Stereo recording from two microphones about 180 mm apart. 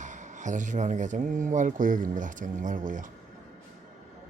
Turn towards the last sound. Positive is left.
turn(degrees=-45)  # may be behind; listen again after turning